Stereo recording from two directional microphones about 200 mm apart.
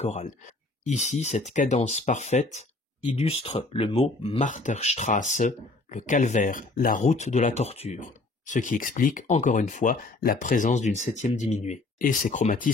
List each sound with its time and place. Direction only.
0.0 s speech: 35° left (ahead or behind)